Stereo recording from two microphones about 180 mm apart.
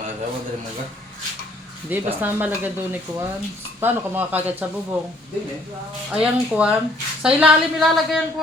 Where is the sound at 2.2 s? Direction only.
10° right (ahead or behind).